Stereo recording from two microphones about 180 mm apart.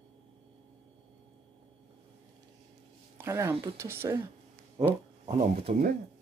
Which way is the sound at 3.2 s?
15° right (ahead or behind).